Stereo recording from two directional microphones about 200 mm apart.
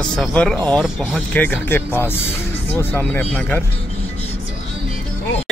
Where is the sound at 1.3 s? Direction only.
10° left (ahead or behind).